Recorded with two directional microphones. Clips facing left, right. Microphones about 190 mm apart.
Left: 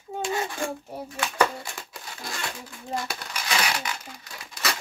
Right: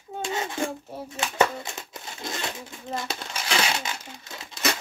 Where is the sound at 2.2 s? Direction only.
20° right (ahead or behind).